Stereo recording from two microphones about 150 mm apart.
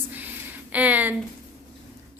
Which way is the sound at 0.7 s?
10° right (ahead or behind).